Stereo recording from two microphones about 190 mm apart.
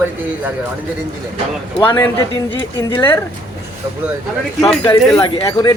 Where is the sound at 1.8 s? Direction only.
10° left (ahead or behind).